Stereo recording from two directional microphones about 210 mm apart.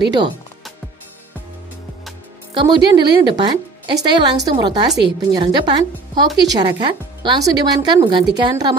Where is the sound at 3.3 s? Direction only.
20° right (ahead or behind).